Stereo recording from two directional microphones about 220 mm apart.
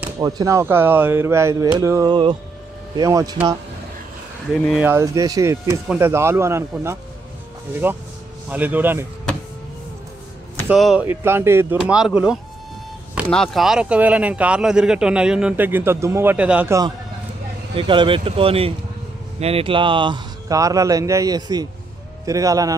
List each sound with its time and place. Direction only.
0.2 s speech: 15° right (ahead or behind)
4.6 s speech: 5° left (ahead or behind)
4.8 s speech: 15° right (ahead or behind)
10.7 s speech: 5° right (ahead or behind)